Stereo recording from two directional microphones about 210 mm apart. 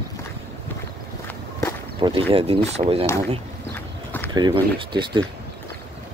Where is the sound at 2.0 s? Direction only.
25° right (ahead or behind).